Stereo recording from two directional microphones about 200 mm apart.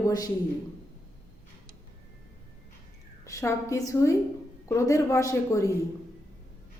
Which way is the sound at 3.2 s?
15° left (ahead or behind).